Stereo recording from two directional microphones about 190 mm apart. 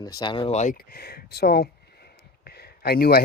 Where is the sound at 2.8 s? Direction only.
55° left (ahead or behind).